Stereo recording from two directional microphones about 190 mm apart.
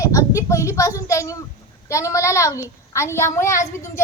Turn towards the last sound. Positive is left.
turn(degrees=15)  # may be behind; listen again after turning